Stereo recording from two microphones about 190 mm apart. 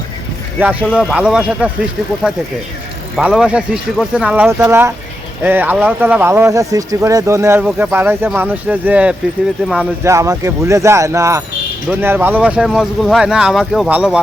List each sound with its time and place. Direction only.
0.6 s speech: 5° right (ahead or behind)
3.2 s speech: 5° right (ahead or behind)